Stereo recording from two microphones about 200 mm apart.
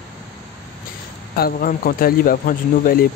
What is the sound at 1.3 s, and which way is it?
Speech, 45° left (ahead or behind).